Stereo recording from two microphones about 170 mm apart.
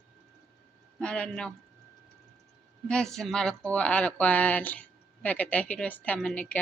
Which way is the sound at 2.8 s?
5° left (ahead or behind).